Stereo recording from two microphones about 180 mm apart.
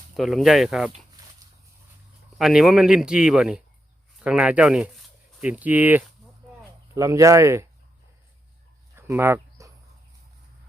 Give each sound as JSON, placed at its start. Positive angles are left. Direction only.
{"t": 0.2, "sound": "speech", "side_deg": 0}
{"t": 2.4, "sound": "speech", "side_deg": 0}
{"t": 9.0, "sound": "a sound", "side_deg": -15}